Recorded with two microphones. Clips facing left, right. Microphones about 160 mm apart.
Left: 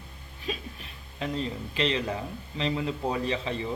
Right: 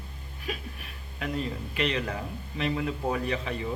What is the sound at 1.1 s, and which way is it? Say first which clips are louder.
A man's voice: left 1 dB; 20° left (ahead or behind).